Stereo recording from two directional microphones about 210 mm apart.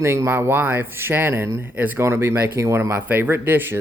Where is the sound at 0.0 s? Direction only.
10° right (ahead or behind).